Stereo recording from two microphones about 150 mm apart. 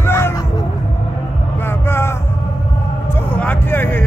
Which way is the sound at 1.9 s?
15° left (ahead or behind).